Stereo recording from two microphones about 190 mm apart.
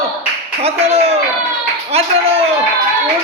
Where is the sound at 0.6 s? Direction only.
35° right (ahead or behind).